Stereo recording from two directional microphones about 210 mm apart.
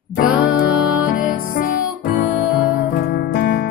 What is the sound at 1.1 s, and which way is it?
Music, 40° left (ahead or behind).